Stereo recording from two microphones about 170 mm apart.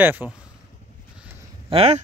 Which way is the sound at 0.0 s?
10° right (ahead or behind).